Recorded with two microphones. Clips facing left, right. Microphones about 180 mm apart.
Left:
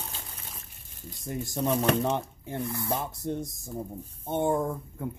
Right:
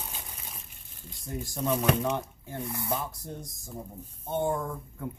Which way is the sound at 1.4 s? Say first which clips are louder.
Left 1 dB; 25° left (ahead or behind).